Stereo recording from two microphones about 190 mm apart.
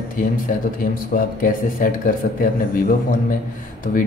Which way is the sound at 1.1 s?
45° left (ahead or behind).